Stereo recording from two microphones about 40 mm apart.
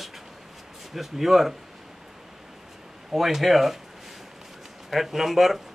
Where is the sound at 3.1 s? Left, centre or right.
Centre.